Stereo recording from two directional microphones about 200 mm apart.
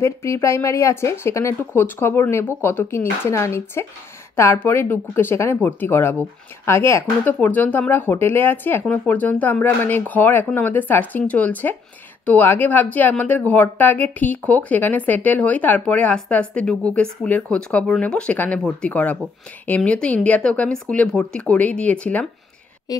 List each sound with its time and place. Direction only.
0.0 s a woman's voice: 15° left (ahead or behind)
22.9 s a woman's voice: 20° left (ahead or behind)